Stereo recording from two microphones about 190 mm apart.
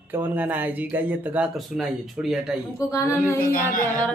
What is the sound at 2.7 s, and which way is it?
Speech, 15° left (ahead or behind).